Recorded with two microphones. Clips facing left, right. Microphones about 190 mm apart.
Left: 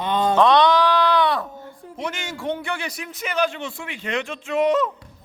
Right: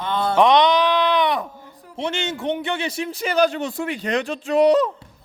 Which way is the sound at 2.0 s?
25° right (ahead or behind).